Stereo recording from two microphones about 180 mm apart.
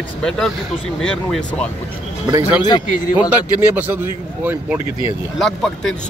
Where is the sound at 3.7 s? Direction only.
10° right (ahead or behind).